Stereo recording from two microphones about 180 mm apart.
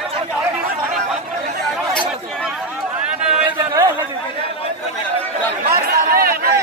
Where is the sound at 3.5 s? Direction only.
25° right (ahead or behind).